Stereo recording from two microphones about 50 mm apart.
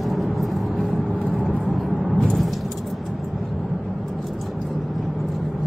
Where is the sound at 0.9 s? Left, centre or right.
Centre.